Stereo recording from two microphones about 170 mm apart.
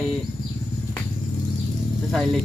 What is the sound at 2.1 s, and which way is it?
Speech, centre (ahead or behind).